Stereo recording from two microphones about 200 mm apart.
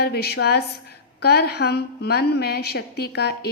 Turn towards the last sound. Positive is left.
turn(degrees=55)  # may be behind; listen again after turning